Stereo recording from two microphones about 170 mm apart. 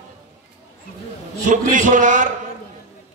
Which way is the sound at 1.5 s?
50° right (ahead or behind).